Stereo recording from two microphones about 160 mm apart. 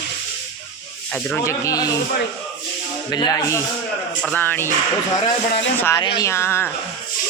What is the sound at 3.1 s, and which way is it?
Speech, 25° left (ahead or behind).